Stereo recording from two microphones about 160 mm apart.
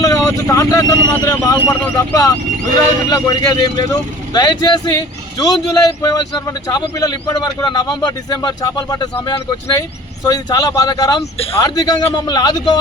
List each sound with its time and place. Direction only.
0.0 s a man's voice: 20° left (ahead or behind)